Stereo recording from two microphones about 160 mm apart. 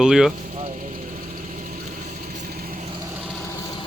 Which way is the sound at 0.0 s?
5° right (ahead or behind).